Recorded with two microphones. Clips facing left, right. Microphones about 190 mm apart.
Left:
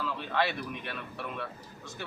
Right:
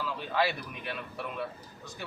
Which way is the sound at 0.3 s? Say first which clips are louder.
Right 1 dB; 5° right (ahead or behind).